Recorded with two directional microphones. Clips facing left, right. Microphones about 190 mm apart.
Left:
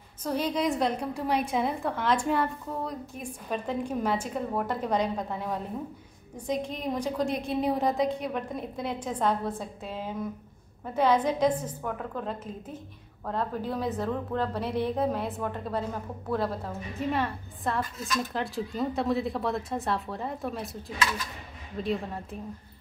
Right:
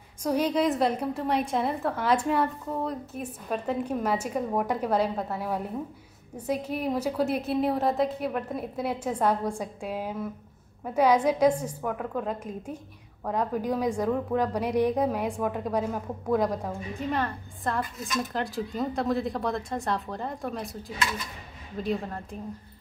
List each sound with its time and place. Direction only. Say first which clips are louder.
0.2 s a woman's voice: right 3 dB; 10° right (ahead or behind)
17.1 s speech: right 1 dB; 5° left (ahead or behind)
21.8 s speech: right 1 dB; 5° left (ahead or behind)